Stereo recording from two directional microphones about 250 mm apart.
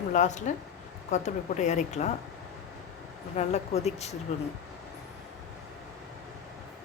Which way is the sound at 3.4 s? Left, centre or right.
Left.